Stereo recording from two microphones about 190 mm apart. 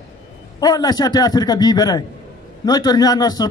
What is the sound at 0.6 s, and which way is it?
A man's voice, 20° left (ahead or behind).